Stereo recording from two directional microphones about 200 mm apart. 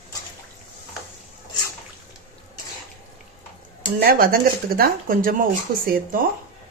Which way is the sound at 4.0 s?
45° right (ahead or behind).